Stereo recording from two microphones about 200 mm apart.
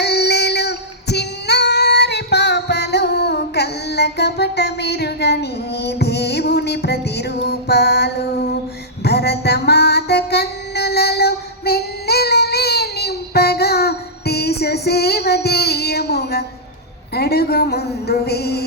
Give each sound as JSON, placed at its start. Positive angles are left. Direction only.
{"t": 0.0, "sound": "child singing", "side_deg": 55}
{"t": 9.0, "sound": "music", "side_deg": 55}
{"t": 17.2, "sound": "a woman's voice", "side_deg": 55}